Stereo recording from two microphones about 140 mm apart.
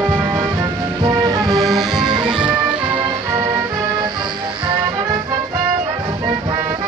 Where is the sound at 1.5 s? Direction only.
Centre (ahead or behind).